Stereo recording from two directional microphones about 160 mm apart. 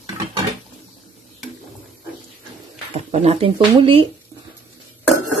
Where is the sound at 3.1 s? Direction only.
40° right (ahead or behind).